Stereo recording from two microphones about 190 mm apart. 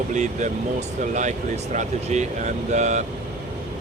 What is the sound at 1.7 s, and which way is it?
Speech, 40° right (ahead or behind).